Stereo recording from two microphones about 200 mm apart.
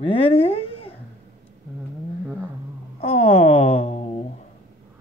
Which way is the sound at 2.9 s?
30° left (ahead or behind).